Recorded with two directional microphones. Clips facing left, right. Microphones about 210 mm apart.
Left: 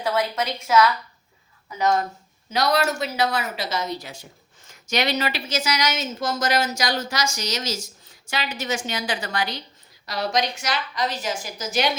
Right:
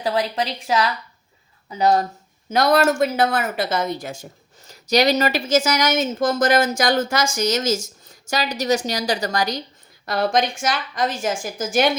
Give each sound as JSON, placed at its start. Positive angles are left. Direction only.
{"t": 0.0, "sound": "a woman's voice", "side_deg": -35}
{"t": 2.5, "sound": "speech", "side_deg": -50}
{"t": 10.1, "sound": "speech", "side_deg": -50}